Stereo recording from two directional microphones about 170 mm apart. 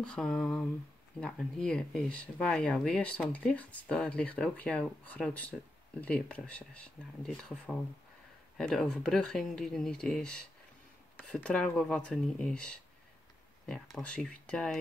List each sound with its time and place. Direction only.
0.0 s speech: 5° left (ahead or behind)